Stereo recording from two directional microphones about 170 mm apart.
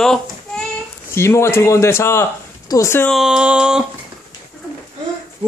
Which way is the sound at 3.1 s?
5° right (ahead or behind).